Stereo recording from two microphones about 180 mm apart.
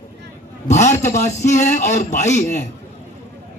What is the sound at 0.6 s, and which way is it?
A man's voice, 40° left (ahead or behind).